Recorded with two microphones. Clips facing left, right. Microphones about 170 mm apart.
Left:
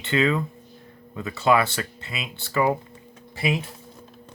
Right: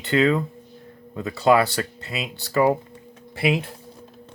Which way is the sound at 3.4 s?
60° right (ahead or behind).